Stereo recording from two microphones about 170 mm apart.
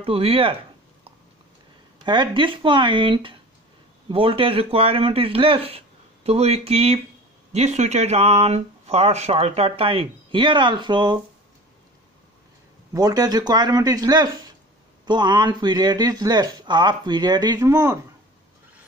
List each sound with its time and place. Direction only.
0.0 s speech: 35° right (ahead or behind)
2.0 s speech: 30° right (ahead or behind)
12.9 s speech: 20° right (ahead or behind)